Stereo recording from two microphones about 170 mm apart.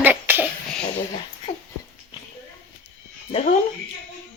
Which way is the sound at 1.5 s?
40° left (ahead or behind).